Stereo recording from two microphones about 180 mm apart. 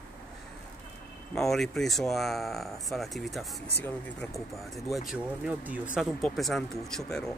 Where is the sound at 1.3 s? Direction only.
Centre (ahead or behind).